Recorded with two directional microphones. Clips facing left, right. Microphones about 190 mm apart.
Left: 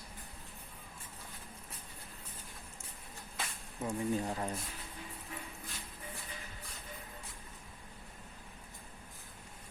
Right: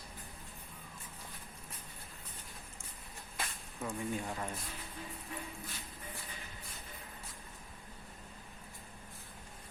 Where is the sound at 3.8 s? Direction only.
30° left (ahead or behind).